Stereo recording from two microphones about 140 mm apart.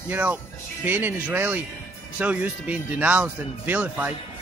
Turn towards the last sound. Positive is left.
turn(degrees=-10)  # may be behind; listen again after turning